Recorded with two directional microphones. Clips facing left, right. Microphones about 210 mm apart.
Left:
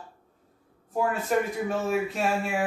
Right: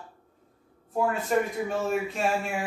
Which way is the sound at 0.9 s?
Centre (ahead or behind).